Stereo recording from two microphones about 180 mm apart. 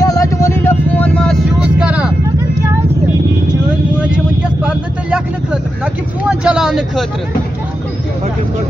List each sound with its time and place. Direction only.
0.0 s vehicle: 20° left (ahead or behind)
1.6 s vehicle: 5° right (ahead or behind)
4.0 s vehicle: 5° right (ahead or behind)